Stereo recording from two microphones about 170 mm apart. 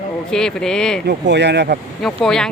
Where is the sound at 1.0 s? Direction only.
80° right.